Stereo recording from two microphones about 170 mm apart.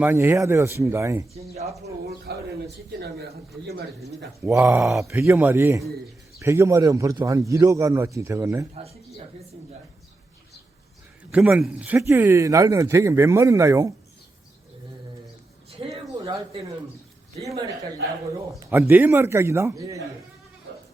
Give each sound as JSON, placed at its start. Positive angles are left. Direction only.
{"t": 0.0, "sound": "a man's voice", "side_deg": -10}
{"t": 2.0, "sound": "speech", "side_deg": -75}
{"t": 4.5, "sound": "a man's voice", "side_deg": -20}
{"t": 4.9, "sound": "speech", "side_deg": 0}
{"t": 5.2, "sound": "a man's voice", "side_deg": -15}
{"t": 8.7, "sound": "speech", "side_deg": -35}
{"t": 11.3, "sound": "a man's voice", "side_deg": -5}
{"t": 15.8, "sound": "a sound", "side_deg": -25}
{"t": 18.6, "sound": "a man's voice", "side_deg": -15}